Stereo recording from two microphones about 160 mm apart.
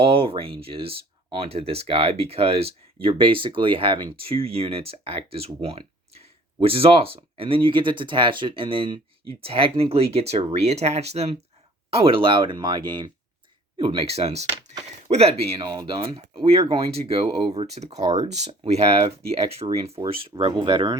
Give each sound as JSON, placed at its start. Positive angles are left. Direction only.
{"t": 0.0, "sound": "speech", "side_deg": -35}